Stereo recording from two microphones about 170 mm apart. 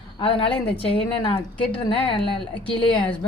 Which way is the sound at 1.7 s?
30° left (ahead or behind).